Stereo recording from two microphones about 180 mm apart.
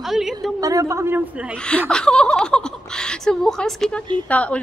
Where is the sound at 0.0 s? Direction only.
Centre (ahead or behind).